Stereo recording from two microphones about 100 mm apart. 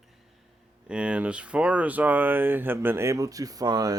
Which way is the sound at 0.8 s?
10° right (ahead or behind).